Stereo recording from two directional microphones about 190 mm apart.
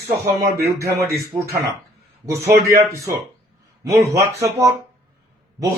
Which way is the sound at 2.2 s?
15° right (ahead or behind).